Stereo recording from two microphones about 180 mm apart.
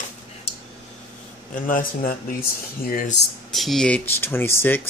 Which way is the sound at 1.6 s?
50° left (ahead or behind).